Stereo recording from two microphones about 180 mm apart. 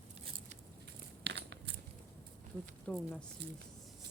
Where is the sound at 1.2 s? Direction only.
70° right (ahead or behind).